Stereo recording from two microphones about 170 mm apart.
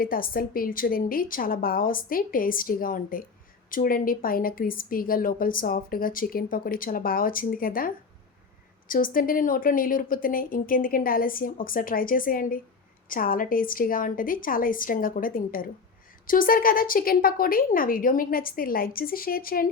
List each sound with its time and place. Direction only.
0.0 s a woman's voice: 55° left (ahead or behind)